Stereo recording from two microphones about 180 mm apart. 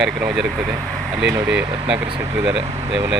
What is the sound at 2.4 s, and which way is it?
Speech, 30° right (ahead or behind).